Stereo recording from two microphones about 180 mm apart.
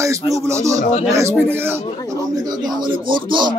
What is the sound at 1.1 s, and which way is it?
A man's voice, 15° right (ahead or behind).